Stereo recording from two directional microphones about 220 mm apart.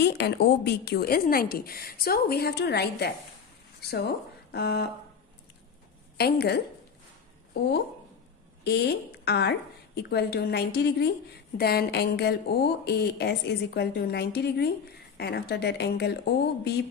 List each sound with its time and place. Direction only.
0.0 s a woman's voice: 50° left (ahead or behind)
6.1 s a woman's voice: 45° left (ahead or behind)
8.6 s a woman's voice: 50° left (ahead or behind)